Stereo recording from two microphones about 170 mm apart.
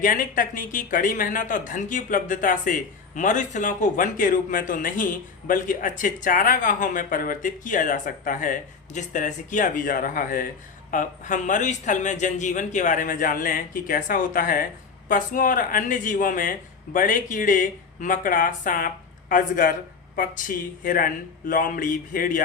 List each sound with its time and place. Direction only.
0.0 s speech: 55° left (ahead or behind)
20.8 s speech: 55° left (ahead or behind)